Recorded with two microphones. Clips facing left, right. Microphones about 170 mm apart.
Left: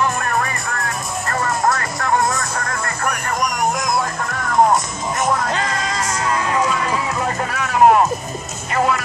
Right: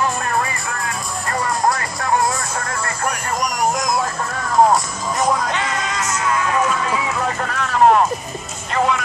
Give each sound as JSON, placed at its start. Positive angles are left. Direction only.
{"t": 1.7, "sound": "vehicle", "side_deg": -20}
{"t": 5.5, "sound": "music", "side_deg": 35}
{"t": 7.4, "sound": "vehicle", "side_deg": 10}
{"t": 8.6, "sound": "music", "side_deg": 5}